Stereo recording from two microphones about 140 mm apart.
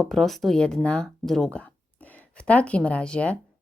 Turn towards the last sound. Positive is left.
turn(degrees=10)  # may be behind; listen again after turning